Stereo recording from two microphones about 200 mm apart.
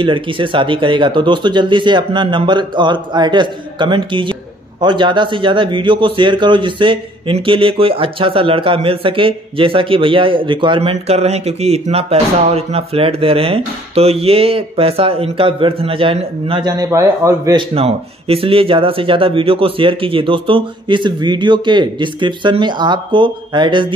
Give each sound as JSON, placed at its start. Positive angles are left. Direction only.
{"t": 0.0, "sound": "speech", "side_deg": -25}